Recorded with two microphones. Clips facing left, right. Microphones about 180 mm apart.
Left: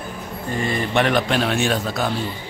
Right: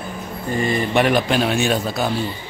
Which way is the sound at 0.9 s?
5° right (ahead or behind).